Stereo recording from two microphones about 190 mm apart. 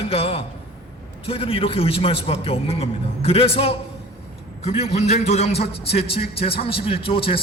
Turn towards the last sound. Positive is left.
turn(degrees=30)  # may be behind; listen again after turning